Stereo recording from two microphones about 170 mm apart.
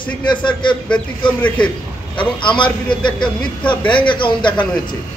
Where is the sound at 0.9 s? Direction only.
5° left (ahead or behind).